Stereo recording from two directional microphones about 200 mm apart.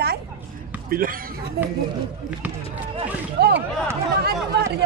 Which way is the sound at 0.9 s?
45° right (ahead or behind).